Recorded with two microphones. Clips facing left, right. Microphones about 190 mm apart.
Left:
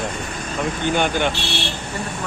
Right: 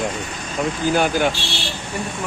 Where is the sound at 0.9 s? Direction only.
5° right (ahead or behind).